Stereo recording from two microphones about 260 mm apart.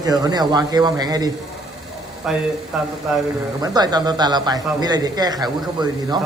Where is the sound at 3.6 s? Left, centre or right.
Centre.